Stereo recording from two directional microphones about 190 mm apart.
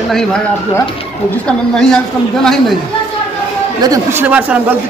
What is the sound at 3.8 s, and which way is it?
Speech, 15° right (ahead or behind).